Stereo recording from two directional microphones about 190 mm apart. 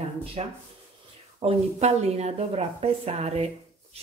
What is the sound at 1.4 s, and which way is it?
Speech, 35° right (ahead or behind).